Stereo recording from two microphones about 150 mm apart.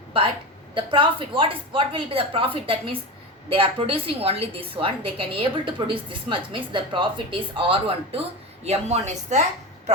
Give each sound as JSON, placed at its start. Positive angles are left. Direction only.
{"t": 0.7, "sound": "a woman's voice", "side_deg": -35}